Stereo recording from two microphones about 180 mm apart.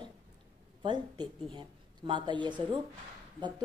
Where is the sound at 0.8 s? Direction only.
25° right (ahead or behind).